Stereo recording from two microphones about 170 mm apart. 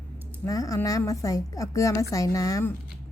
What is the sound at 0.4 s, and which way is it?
A woman's voice, 20° left (ahead or behind).